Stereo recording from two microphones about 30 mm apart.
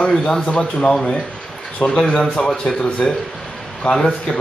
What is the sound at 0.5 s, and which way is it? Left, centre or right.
Speech, left.